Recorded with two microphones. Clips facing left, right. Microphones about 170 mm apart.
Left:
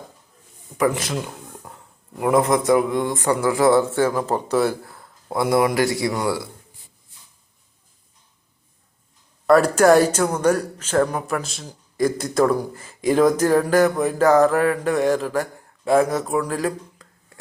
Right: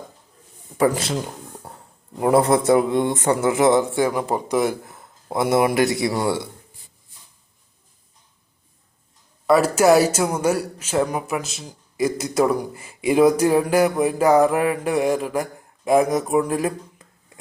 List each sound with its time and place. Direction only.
0.8 s a man's voice: 30° right (ahead or behind)
9.5 s speech: 5° right (ahead or behind)